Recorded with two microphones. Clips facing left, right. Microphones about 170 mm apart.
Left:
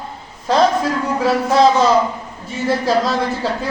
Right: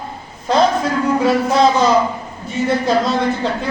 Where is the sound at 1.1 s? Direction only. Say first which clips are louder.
Left 1 dB; centre (ahead or behind).